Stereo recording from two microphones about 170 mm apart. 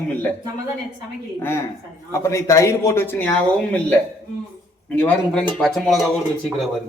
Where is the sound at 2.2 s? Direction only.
15° left (ahead or behind).